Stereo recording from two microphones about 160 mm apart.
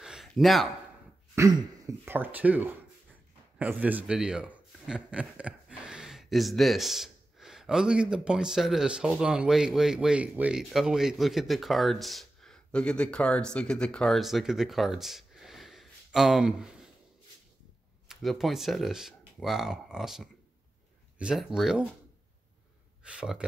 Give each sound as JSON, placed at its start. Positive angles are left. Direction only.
{"t": 0.0, "sound": "a sound", "side_deg": 0}
{"t": 1.3, "sound": "speech", "side_deg": -20}
{"t": 18.0, "sound": "speech", "side_deg": 0}
{"t": 23.0, "sound": "speech", "side_deg": -5}